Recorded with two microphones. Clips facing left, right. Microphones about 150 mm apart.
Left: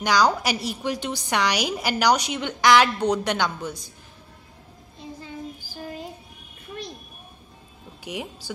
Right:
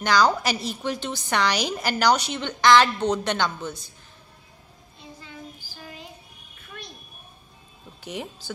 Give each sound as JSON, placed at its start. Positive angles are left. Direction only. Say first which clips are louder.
{"t": 0.0, "sound": "a woman's voice", "louder": "even", "side_deg": 10}
{"t": 5.8, "sound": "child singing", "louder": "left 8 dB", "side_deg": 35}
{"t": 8.0, "sound": "speech", "louder": "left 1 dB", "side_deg": 10}